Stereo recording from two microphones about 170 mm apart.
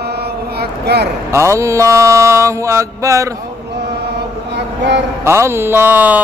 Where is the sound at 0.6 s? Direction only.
75° right (ahead or behind).